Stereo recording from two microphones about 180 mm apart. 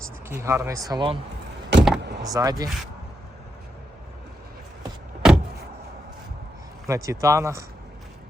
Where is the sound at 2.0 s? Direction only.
65° right (ahead or behind).